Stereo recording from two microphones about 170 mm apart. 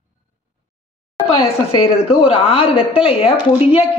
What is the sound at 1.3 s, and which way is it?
A woman's voice, 30° left (ahead or behind).